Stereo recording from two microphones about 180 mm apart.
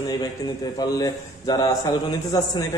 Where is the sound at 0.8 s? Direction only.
20° left (ahead or behind).